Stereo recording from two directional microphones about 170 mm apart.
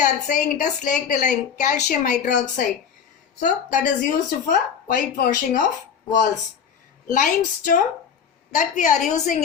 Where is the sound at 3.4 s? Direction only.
50° left (ahead or behind).